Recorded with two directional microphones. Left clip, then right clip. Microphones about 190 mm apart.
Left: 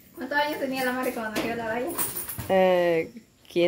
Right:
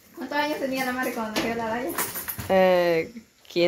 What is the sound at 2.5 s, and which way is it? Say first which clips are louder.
Speech: right 1 dB; 20° left (ahead or behind).